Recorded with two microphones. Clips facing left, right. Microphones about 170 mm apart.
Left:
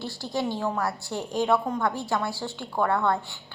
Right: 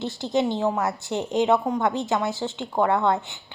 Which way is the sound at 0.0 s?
20° right (ahead or behind).